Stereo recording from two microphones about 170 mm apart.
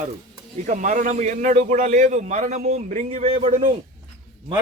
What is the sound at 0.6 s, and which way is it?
A man's voice, 45° right (ahead or behind).